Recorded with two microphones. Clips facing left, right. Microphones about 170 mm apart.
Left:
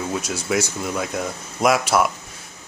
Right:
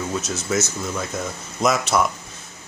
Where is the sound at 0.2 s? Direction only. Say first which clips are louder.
Left 1 dB; 10° left (ahead or behind).